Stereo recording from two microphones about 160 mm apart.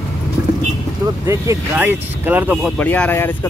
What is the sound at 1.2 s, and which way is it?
Speech, 20° right (ahead or behind).